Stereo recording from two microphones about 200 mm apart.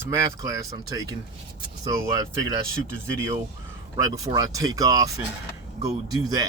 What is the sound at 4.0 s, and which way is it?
Speech, 15° right (ahead or behind).